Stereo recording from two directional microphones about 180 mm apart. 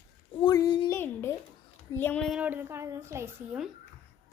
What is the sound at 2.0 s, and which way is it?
Child singing, 10° left (ahead or behind).